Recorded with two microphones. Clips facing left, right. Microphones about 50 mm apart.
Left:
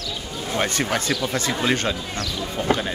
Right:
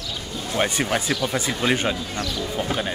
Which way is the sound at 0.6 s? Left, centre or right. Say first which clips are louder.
Right 1 dB; centre.